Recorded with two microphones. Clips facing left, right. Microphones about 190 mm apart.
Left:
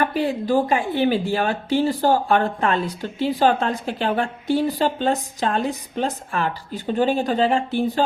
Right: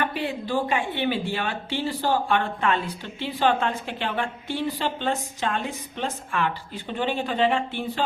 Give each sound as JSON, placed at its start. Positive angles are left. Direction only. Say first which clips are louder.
{"t": 0.0, "sound": "speech", "louder": "left 6 dB", "side_deg": 40}